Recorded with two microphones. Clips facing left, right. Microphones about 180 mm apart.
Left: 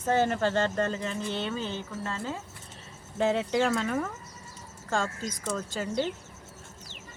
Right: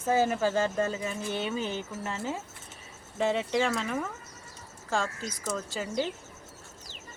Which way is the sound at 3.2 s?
Centre (ahead or behind).